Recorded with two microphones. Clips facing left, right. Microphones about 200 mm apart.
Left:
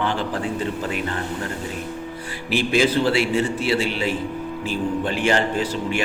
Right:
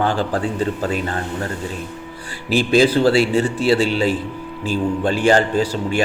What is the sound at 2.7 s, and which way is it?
A man's voice, 35° right (ahead or behind).